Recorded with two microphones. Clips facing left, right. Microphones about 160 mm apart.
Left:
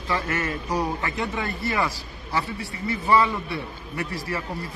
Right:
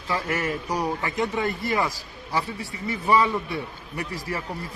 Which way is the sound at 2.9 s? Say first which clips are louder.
Even; 15° right (ahead or behind).